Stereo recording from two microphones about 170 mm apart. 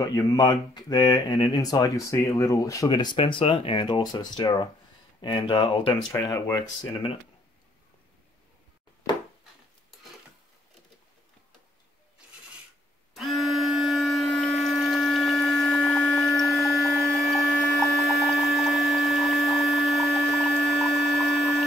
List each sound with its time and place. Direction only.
0.0 s speech: 20° left (ahead or behind)
6.1 s speech: 15° left (ahead or behind)
13.1 s a sound: centre (ahead or behind)